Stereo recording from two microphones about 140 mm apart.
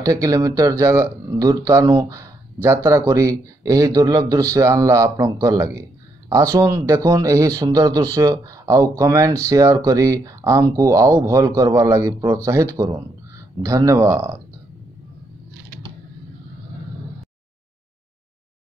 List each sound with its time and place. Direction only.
0.0 s speech: 25° right (ahead or behind)